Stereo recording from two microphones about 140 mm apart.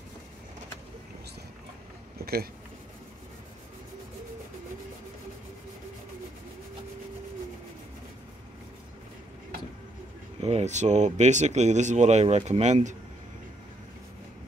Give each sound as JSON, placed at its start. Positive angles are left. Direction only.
{"t": 10.4, "sound": "speech", "side_deg": -50}